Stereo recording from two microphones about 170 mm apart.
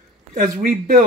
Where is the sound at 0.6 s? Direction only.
55° right (ahead or behind).